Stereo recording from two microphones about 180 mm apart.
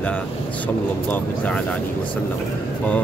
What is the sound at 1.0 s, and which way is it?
Speech, 10° left (ahead or behind).